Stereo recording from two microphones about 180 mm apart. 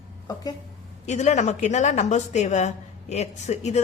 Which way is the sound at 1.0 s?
40° left (ahead or behind).